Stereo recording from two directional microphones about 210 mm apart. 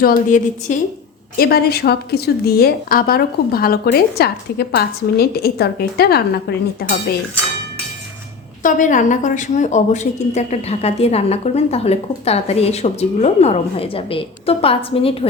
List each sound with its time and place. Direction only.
0.0 s a woman's voice: 40° left (ahead or behind)
8.6 s a woman's voice: 35° left (ahead or behind)